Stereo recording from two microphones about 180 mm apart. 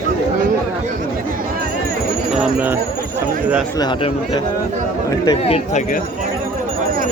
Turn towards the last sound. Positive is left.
turn(degrees=30)  # may be behind; listen again after turning